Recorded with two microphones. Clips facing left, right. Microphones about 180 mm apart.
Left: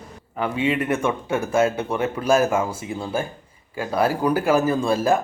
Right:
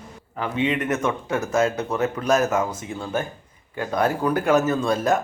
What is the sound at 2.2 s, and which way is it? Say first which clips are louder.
Speech: left 3 dB; 10° left (ahead or behind).